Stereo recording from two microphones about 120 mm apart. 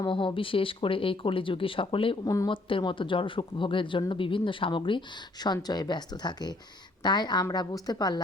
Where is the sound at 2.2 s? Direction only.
30° left (ahead or behind).